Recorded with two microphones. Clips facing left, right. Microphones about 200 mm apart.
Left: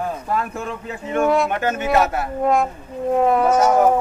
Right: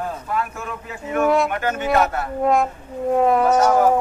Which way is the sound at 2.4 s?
Centre (ahead or behind).